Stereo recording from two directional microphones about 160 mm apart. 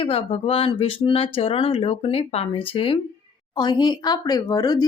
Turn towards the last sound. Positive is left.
turn(degrees=25)  # may be behind; listen again after turning